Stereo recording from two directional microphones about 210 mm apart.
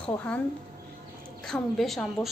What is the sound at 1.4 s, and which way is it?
Speech, centre (ahead or behind).